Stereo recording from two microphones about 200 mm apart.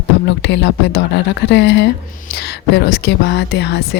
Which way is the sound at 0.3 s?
60° left (ahead or behind).